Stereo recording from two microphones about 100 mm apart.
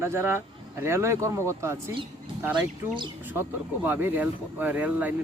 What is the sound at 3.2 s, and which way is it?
A man's voice, 20° right (ahead or behind).